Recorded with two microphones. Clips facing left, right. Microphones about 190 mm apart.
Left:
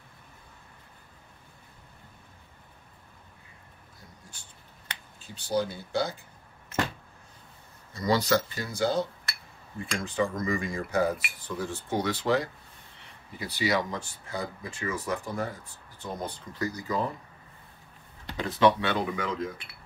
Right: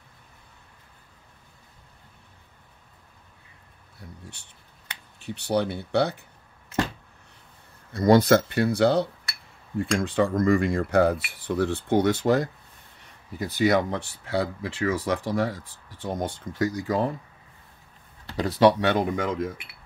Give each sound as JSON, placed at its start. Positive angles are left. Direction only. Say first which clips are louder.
{"t": 4.2, "sound": "a sound", "louder": "right 7 dB", "side_deg": -65}
{"t": 5.2, "sound": "speech", "louder": "right 4 dB", "side_deg": -65}
{"t": 7.9, "sound": "speech", "louder": "right 8 dB", "side_deg": -55}
{"t": 18.3, "sound": "speech", "louder": "right 4 dB", "side_deg": -35}